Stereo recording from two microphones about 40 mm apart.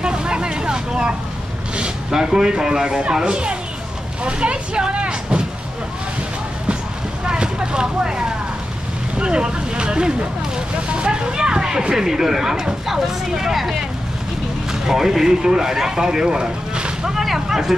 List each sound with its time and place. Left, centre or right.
0.0 s vehicle: right
2.0 s speech: centre
7.2 s vehicle: right
9.2 s speech: right
17.1 s speech: centre